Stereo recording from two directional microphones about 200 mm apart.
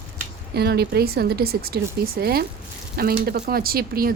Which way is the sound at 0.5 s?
55° right (ahead or behind).